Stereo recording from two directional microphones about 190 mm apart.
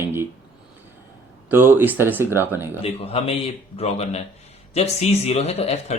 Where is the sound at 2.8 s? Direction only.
30° left (ahead or behind).